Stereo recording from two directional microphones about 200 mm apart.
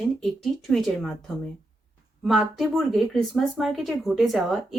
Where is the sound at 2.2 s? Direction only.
Centre (ahead or behind).